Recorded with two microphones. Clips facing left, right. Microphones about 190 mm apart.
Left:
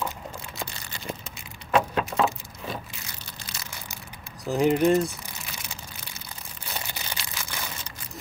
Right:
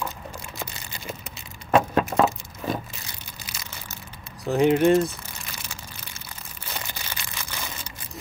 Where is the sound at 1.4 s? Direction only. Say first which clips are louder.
Right 3 dB; 45° right (ahead or behind).